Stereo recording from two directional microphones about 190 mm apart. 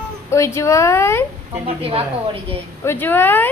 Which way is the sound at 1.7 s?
30° right (ahead or behind).